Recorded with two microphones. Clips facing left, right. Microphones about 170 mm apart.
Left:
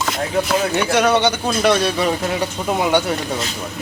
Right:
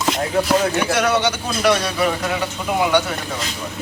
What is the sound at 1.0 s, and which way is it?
Speech, 30° left (ahead or behind).